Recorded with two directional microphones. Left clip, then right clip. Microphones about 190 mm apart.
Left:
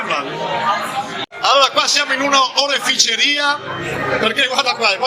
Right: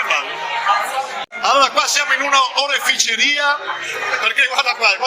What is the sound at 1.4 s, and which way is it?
A man's voice, centre (ahead or behind).